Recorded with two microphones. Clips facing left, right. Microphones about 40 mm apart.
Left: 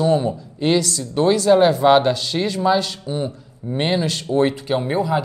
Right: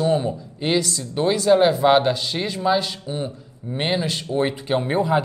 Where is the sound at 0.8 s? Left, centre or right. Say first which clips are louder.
Left 2 dB; right.